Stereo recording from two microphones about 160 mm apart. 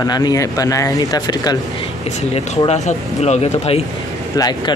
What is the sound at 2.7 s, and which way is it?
Speech, 45° left (ahead or behind).